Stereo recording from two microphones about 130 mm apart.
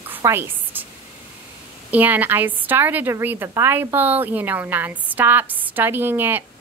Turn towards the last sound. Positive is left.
turn(degrees=-15)  # may be behind; listen again after turning